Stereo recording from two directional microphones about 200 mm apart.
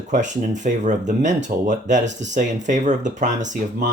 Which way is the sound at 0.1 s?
35° right (ahead or behind).